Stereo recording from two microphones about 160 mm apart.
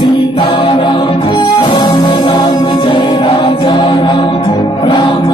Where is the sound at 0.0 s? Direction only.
30° left (ahead or behind).